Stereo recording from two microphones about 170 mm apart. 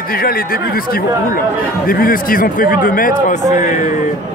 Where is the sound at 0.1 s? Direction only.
60° left (ahead or behind).